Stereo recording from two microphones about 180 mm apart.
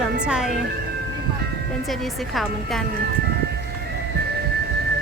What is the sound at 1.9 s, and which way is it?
Speech, centre (ahead or behind).